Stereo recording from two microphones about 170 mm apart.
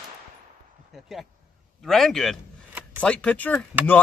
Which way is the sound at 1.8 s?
Centre (ahead or behind).